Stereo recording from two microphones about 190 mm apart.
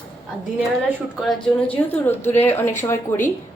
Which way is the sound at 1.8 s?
10° left (ahead or behind).